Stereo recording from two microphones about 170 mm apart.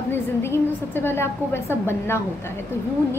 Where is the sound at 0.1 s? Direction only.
15° left (ahead or behind).